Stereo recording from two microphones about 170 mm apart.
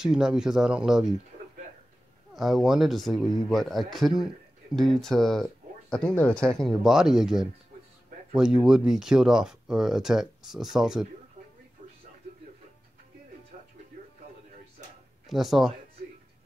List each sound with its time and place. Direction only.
0.0 s speech: 5° right (ahead or behind)
2.3 s speech: centre (ahead or behind)
15.2 s speech: centre (ahead or behind)